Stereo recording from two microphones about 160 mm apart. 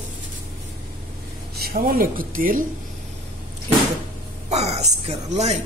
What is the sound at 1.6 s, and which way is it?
A woman's voice, 70° right (ahead or behind).